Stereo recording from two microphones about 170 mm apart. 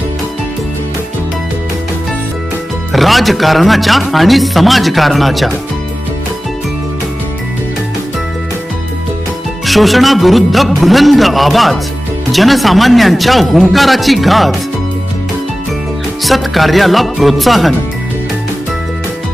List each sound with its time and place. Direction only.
2.9 s speech: centre (ahead or behind)
9.6 s speech: centre (ahead or behind)
16.2 s speech: centre (ahead or behind)